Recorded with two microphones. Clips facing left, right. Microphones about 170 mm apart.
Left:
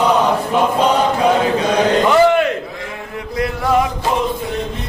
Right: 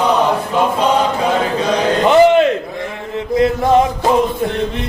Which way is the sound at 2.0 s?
20° right (ahead or behind).